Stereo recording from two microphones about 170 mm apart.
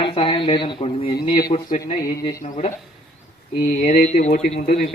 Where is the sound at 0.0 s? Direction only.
30° left (ahead or behind).